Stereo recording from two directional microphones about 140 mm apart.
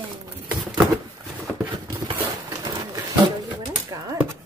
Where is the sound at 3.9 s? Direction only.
25° right (ahead or behind).